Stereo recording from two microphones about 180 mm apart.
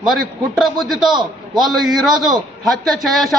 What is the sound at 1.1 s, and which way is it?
Speech, 25° right (ahead or behind).